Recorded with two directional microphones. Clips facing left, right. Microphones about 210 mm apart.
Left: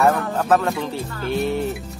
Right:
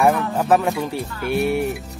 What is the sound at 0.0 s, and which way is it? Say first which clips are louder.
Speech: right 1 dB; 15° right (ahead or behind).